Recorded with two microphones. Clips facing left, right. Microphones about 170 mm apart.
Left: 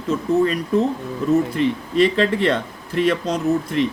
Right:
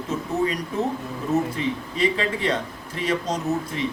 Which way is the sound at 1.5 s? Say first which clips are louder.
Left 8 dB; 70° left (ahead or behind).